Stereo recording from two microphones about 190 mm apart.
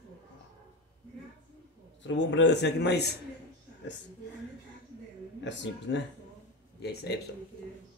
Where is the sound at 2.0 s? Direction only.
70° left (ahead or behind).